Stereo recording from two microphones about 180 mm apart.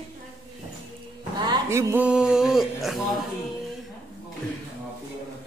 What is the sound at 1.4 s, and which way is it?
Speech, 20° right (ahead or behind).